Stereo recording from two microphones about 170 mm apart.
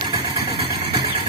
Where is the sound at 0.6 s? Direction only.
25° right (ahead or behind).